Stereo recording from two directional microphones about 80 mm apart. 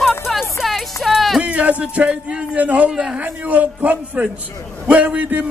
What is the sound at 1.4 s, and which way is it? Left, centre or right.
A man's voice, centre.